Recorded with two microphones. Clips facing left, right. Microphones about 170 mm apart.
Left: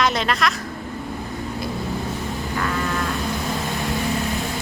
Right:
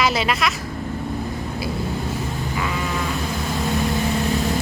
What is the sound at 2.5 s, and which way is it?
Sheep, 5° right (ahead or behind).